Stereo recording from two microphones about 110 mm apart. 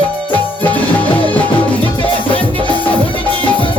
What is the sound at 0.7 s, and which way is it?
Music, 15° left (ahead or behind).